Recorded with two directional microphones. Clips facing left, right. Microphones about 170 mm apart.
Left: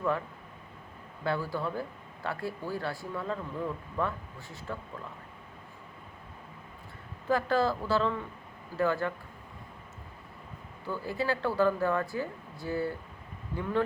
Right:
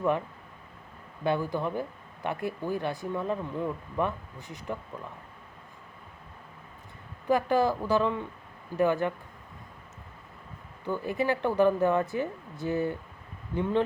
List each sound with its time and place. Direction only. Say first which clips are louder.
1.2 s speech: right 3 dB; 20° right (ahead or behind)
7.3 s speech: right 3 dB; 15° right (ahead or behind)
10.8 s speech: right 3 dB; 20° right (ahead or behind)